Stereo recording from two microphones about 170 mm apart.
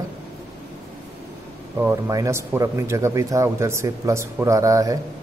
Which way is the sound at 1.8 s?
15° right (ahead or behind).